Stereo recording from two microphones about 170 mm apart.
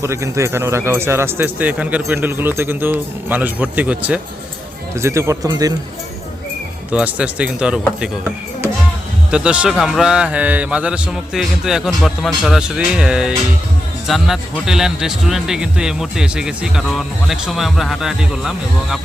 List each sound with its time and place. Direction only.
0.0 s speech: 15° right (ahead or behind)
6.9 s speech: 5° right (ahead or behind)
9.3 s speech: 5° right (ahead or behind)